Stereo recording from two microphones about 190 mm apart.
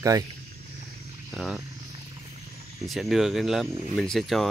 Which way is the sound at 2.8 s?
Centre (ahead or behind).